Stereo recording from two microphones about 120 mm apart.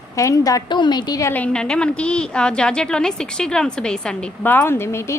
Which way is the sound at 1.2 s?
15° left (ahead or behind).